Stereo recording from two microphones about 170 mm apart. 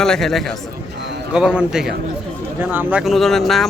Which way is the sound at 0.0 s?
Centre (ahead or behind).